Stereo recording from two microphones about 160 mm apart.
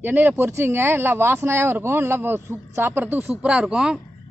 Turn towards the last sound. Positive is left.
turn(degrees=-5)  # may be behind; listen again after turning